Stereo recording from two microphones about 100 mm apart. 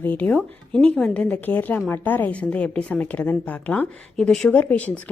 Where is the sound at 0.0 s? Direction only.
15° left (ahead or behind).